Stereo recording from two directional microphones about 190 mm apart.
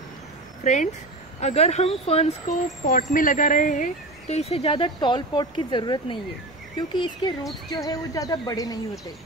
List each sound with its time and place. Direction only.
0.6 s speech: 40° left (ahead or behind); by 9.0 s 20° left (ahead or behind)